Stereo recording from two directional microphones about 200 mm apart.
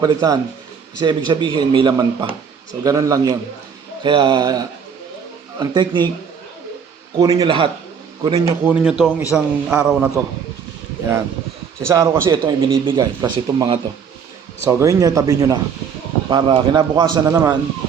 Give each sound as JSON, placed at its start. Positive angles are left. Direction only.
{"t": 0.0, "sound": "speech", "side_deg": -20}
{"t": 7.2, "sound": "speech", "side_deg": -20}
{"t": 8.6, "sound": "speech", "side_deg": -5}
{"t": 11.9, "sound": "speech", "side_deg": -15}